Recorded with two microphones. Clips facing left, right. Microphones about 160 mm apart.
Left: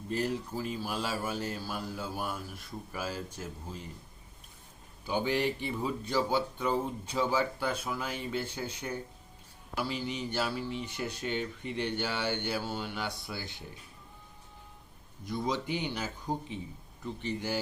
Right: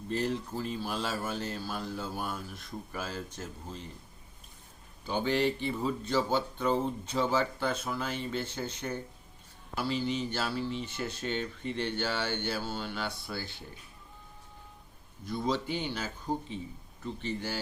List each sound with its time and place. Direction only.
0.1 s speech: 10° left (ahead or behind)
5.0 s speech: 10° left (ahead or behind)
15.3 s speech: 15° left (ahead or behind)
17.2 s speech: 15° left (ahead or behind)